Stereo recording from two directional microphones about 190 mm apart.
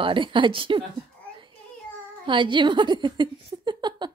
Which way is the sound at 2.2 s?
25° right (ahead or behind).